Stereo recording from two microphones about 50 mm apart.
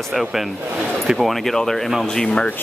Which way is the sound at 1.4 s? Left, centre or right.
Centre.